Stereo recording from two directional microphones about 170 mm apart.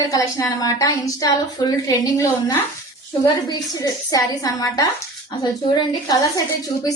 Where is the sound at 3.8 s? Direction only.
20° left (ahead or behind).